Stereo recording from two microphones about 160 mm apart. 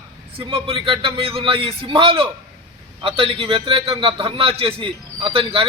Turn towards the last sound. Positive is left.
turn(degrees=-35)  # may be behind; listen again after turning